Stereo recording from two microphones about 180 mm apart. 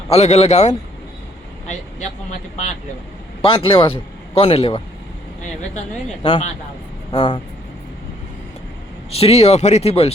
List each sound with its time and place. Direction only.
0.1 s speech: 35° left (ahead or behind)
3.4 s speech: 30° left (ahead or behind)
7.1 s speech: 25° left (ahead or behind)
9.0 s speech: 35° left (ahead or behind)